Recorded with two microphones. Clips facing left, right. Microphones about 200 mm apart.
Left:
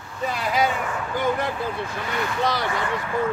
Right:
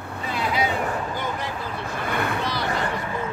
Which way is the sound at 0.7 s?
35° right (ahead or behind).